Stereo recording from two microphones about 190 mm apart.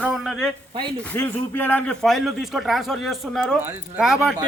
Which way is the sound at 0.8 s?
25° right (ahead or behind).